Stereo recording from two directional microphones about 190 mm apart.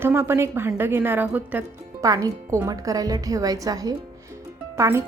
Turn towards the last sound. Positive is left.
turn(degrees=-15)  # may be behind; listen again after turning